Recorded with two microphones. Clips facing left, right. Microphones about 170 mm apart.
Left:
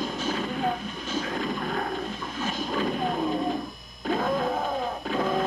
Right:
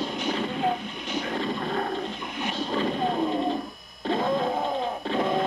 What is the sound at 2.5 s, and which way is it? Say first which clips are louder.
Music: right 1 dB; 30° right (ahead or behind).